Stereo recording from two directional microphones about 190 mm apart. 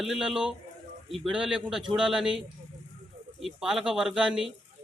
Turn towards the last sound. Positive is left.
turn(degrees=-5)  # may be behind; listen again after turning